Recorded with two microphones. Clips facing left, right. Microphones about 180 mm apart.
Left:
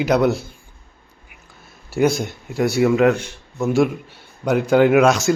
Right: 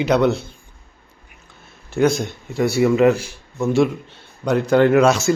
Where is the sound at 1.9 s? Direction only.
5° left (ahead or behind).